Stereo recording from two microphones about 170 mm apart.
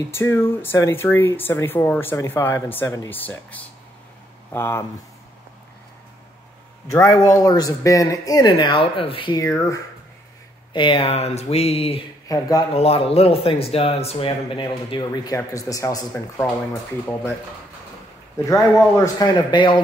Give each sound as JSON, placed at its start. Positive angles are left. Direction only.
{"t": 0.1, "sound": "speech", "side_deg": 15}
{"t": 6.9, "sound": "speech", "side_deg": 15}
{"t": 10.7, "sound": "speech", "side_deg": 30}
{"t": 12.3, "sound": "speech", "side_deg": 20}
{"t": 12.7, "sound": "speech", "side_deg": 35}
{"t": 18.4, "sound": "speech", "side_deg": 20}